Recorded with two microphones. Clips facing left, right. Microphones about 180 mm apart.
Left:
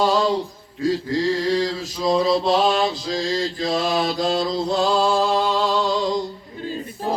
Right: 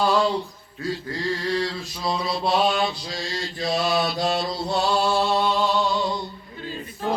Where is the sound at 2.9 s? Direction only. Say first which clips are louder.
Left 8 dB; 90° left.